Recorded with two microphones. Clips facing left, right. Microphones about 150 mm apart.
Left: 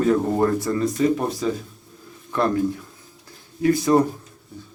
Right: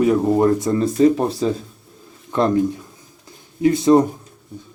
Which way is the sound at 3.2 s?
20° right (ahead or behind).